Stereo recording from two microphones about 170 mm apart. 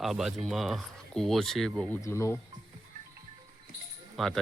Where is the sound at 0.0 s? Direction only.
Centre (ahead or behind).